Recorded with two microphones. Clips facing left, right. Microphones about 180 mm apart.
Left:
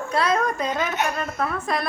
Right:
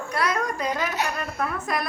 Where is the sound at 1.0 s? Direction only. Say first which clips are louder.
Left 4 dB; 35° right (ahead or behind).